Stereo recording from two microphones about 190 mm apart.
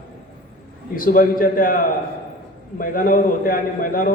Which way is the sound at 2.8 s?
45° left (ahead or behind).